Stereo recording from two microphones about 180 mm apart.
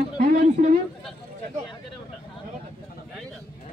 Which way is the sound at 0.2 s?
40° right (ahead or behind).